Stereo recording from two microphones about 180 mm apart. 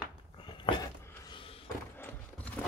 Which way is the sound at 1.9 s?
10° left (ahead or behind).